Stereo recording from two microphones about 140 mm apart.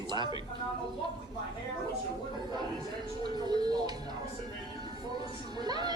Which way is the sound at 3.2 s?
30° right (ahead or behind).